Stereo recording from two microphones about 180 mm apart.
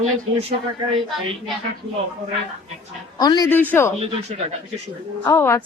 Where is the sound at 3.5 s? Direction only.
10° left (ahead or behind).